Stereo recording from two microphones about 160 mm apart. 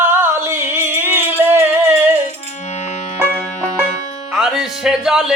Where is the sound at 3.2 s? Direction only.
15° right (ahead or behind).